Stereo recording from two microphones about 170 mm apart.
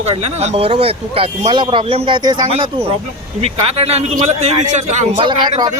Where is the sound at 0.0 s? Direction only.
40° right (ahead or behind).